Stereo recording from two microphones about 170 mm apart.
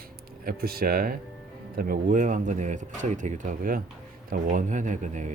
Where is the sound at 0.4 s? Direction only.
60° right (ahead or behind).